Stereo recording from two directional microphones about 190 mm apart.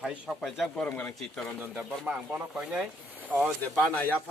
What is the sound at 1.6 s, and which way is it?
Speech, 5° right (ahead or behind).